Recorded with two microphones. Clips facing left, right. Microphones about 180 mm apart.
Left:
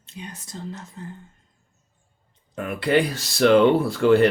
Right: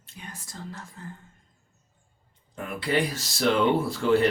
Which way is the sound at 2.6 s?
65° left (ahead or behind).